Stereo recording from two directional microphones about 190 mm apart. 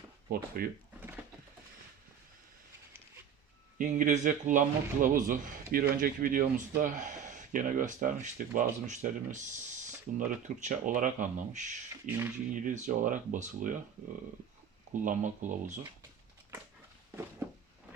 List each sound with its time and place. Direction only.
0.3 s speech: 50° right (ahead or behind)
3.8 s speech: 40° right (ahead or behind)
12.0 s speech: 10° right (ahead or behind)
12.5 s speech: 40° right (ahead or behind)
15.0 s speech: 40° right (ahead or behind)